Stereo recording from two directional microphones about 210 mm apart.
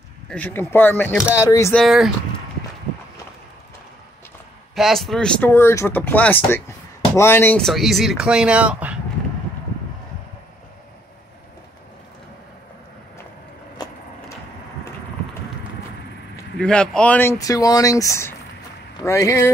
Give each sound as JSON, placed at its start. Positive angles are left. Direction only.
{"t": 0.3, "sound": "speech", "side_deg": 10}
{"t": 1.8, "sound": "speech", "side_deg": 0}
{"t": 4.7, "sound": "speech", "side_deg": 0}
{"t": 13.8, "sound": "vehicle", "side_deg": 20}
{"t": 16.5, "sound": "speech", "side_deg": 5}